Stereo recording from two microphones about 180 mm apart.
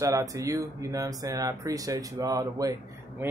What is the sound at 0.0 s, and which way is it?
A man's voice, 20° right (ahead or behind).